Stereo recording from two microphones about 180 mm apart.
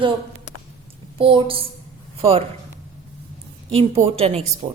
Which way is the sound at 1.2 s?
30° right (ahead or behind).